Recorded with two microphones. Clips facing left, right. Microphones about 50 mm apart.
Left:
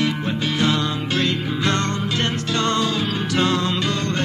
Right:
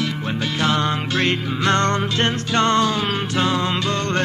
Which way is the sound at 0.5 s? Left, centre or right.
Right.